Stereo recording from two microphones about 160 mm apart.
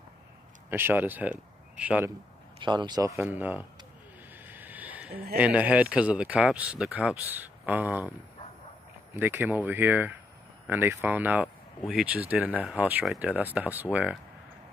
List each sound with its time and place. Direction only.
0.7 s speech: 15° right (ahead or behind)
2.6 s speech: 30° right (ahead or behind); by 3.6 s 10° right (ahead or behind)
4.4 s a sound: 10° right (ahead or behind)
5.4 s speech: 10° right (ahead or behind)
9.1 s speech: 10° right (ahead or behind)